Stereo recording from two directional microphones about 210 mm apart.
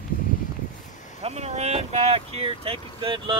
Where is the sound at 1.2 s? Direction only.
30° right (ahead or behind).